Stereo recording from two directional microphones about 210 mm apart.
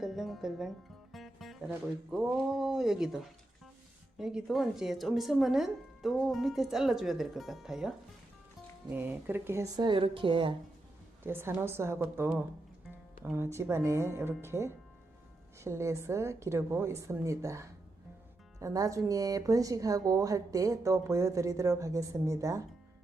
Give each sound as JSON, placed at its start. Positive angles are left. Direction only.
{"t": 0.0, "sound": "music", "side_deg": 0}
{"t": 2.1, "sound": "speech", "side_deg": -5}
{"t": 11.2, "sound": "speech", "side_deg": -10}